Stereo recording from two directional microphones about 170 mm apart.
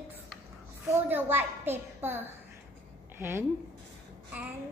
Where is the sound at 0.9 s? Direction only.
10° right (ahead or behind).